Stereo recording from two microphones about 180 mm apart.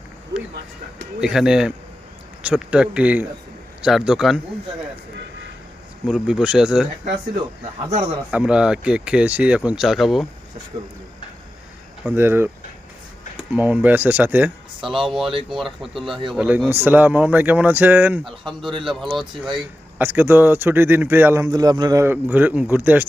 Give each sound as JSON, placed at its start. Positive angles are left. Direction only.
{"t": 1.2, "sound": "speech", "side_deg": -5}
{"t": 6.1, "sound": "speech", "side_deg": -5}
{"t": 8.3, "sound": "speech", "side_deg": -5}
{"t": 12.0, "sound": "speech", "side_deg": -10}
{"t": 13.5, "sound": "speech", "side_deg": -10}
{"t": 18.7, "sound": "speech", "side_deg": -25}
{"t": 18.9, "sound": "speech", "side_deg": 0}